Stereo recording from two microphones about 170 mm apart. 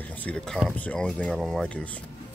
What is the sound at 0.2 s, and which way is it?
Speech, 5° left (ahead or behind).